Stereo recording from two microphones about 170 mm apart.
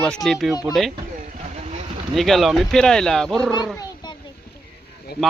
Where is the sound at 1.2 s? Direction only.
40° right (ahead or behind).